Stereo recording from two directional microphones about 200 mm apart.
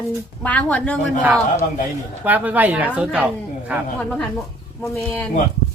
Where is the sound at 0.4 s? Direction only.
5° left (ahead or behind).